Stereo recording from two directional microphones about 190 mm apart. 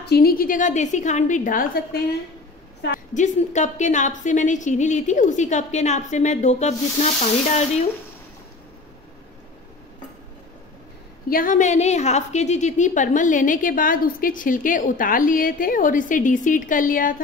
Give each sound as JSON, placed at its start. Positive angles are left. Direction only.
{"t": 0.0, "sound": "a woman's voice", "side_deg": 55}
{"t": 3.2, "sound": "a woman's voice", "side_deg": 40}
{"t": 11.2, "sound": "a woman's voice", "side_deg": 45}